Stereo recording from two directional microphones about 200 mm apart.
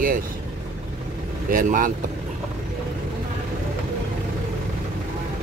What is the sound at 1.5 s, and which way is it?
Speech, 45° right (ahead or behind).